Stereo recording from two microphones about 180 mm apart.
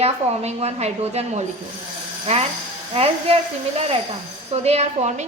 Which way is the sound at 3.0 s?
35° right (ahead or behind).